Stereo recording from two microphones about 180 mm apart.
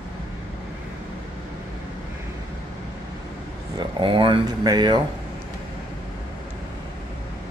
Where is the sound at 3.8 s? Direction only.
25° right (ahead or behind).